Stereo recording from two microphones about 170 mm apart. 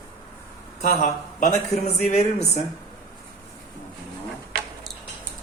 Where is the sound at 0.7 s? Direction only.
50° left (ahead or behind).